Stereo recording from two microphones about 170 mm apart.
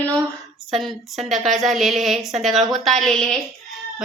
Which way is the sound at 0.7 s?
Centre (ahead or behind).